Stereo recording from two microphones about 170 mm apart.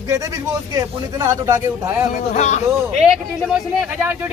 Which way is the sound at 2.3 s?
45° left (ahead or behind).